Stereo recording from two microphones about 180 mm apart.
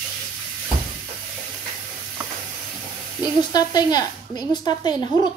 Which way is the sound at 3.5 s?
20° left (ahead or behind).